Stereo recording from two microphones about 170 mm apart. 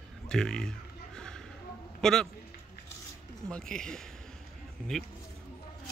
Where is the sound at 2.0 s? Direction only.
5° left (ahead or behind).